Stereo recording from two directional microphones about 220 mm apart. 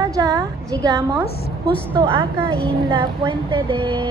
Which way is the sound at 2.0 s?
25° right (ahead or behind).